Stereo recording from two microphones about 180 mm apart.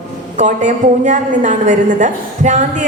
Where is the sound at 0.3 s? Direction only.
40° right (ahead or behind).